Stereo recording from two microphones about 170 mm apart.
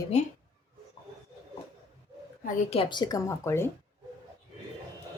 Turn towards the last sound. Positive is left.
turn(degrees=15)  # may be behind; listen again after turning